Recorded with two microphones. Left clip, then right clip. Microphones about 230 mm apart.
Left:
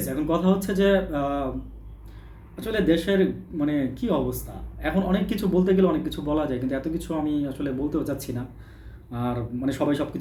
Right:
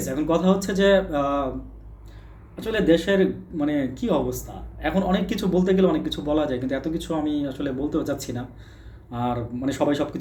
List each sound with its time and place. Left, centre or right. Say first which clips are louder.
0.0 s speech: right 2 dB; centre
2.6 s speech: right 3 dB; centre